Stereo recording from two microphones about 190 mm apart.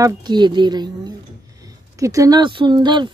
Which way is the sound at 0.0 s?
20° right (ahead or behind).